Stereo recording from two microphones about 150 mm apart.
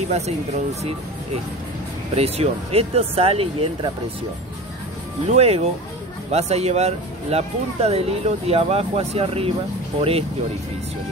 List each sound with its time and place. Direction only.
2.1 s speech: 45° right (ahead or behind)
5.3 s speech: 45° right (ahead or behind)